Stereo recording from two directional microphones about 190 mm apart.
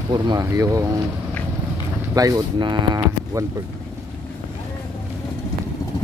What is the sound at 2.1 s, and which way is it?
Speech, 20° right (ahead or behind).